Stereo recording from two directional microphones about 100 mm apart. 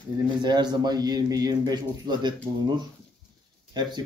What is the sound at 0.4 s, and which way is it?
Speech, 45° right (ahead or behind).